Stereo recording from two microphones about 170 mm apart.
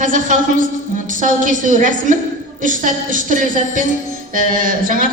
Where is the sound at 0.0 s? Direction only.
50° right (ahead or behind).